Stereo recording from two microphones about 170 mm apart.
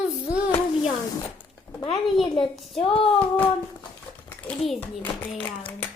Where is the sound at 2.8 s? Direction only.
35° left (ahead or behind).